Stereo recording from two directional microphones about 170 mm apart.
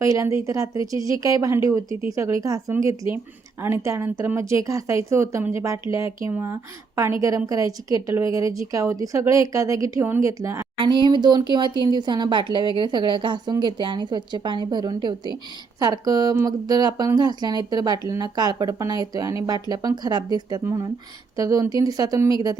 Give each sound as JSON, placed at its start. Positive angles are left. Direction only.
{"t": 0.0, "sound": "a woman's voice", "side_deg": -20}
{"t": 10.8, "sound": "speech", "side_deg": -25}